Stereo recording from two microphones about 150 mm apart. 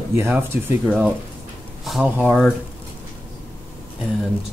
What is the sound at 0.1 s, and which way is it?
Speech, 15° right (ahead or behind).